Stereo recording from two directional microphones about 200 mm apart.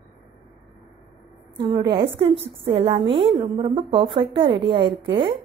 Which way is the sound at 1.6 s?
20° right (ahead or behind).